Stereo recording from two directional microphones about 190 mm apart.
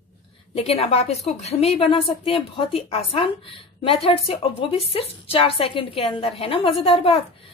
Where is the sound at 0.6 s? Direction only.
30° left (ahead or behind).